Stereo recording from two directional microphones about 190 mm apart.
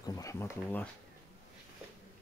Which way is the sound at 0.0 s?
20° left (ahead or behind).